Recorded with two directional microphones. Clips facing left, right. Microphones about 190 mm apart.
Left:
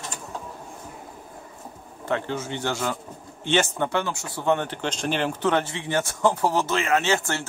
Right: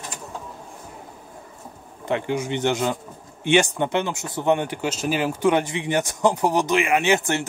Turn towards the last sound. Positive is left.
turn(degrees=-15)  # may be behind; listen again after turning